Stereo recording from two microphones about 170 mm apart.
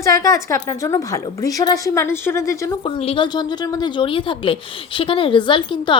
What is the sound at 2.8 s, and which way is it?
A woman's voice, 30° left (ahead or behind).